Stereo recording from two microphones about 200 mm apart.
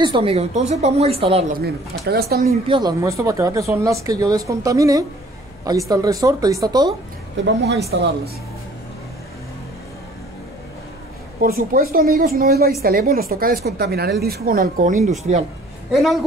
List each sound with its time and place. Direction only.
0.0 s a woman's voice: 25° right (ahead or behind)
1.6 s speech: 50° right (ahead or behind)
2.7 s speech: 20° right (ahead or behind)
7.4 s speech: 55° right (ahead or behind)
11.4 s a woman's voice: 45° right (ahead or behind)
15.9 s speech: centre (ahead or behind)